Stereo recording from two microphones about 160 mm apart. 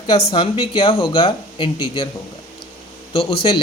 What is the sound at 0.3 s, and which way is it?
Speech, 35° left (ahead or behind).